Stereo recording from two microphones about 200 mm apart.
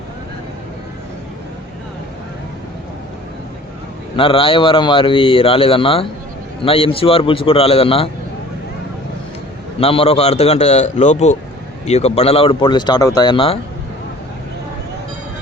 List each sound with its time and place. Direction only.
4.2 s a man's voice: 25° left (ahead or behind)
9.8 s a man's voice: 30° left (ahead or behind)